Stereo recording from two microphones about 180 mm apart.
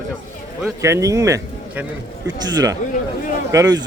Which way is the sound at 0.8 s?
15° right (ahead or behind).